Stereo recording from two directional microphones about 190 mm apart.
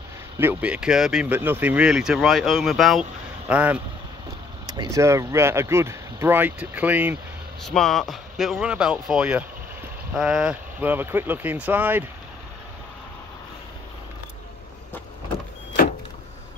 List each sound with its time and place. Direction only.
0.4 s speech: 10° right (ahead or behind)
4.6 s speech: 20° right (ahead or behind)
7.6 s speech: centre (ahead or behind)